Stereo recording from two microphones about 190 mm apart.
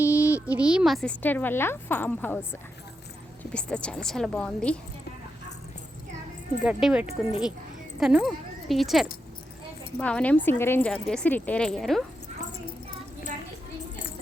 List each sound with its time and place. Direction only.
0.0 s a sound: 10° right (ahead or behind)
0.4 s a woman's voice: 5° right (ahead or behind)
6.7 s a woman's voice: 5° right (ahead or behind)
7.0 s speech: 35° left (ahead or behind)
7.9 s speech: 5° right (ahead or behind)